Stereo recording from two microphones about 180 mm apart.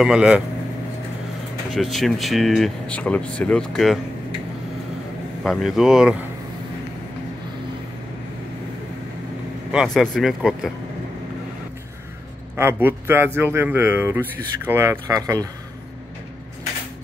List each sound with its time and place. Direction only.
0.0 s speech: 5° right (ahead or behind)
1.7 s speech: centre (ahead or behind)
5.4 s speech: centre (ahead or behind)
9.7 s speech: centre (ahead or behind)
12.5 s speech: 10° right (ahead or behind)